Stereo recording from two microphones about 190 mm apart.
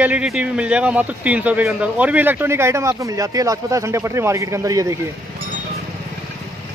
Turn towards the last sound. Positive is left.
turn(degrees=-15)  # may be behind; listen again after turning